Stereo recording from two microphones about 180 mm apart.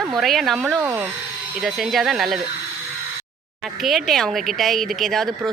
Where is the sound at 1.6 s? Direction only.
Centre (ahead or behind).